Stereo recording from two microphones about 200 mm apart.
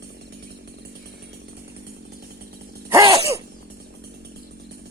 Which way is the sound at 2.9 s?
15° right (ahead or behind).